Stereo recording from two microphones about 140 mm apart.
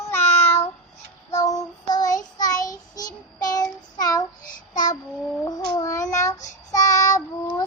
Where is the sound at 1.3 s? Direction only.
25° left (ahead or behind).